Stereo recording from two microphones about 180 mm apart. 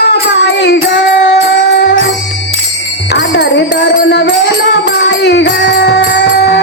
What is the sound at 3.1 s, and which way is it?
Music, 65° left (ahead or behind).